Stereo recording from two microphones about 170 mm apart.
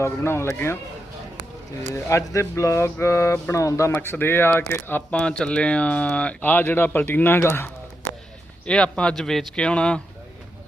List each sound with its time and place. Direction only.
0.0 s speech: 15° left (ahead or behind)
1.9 s speech: 15° left (ahead or behind)